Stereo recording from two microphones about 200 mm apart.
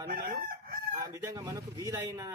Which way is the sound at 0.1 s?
45° right (ahead or behind).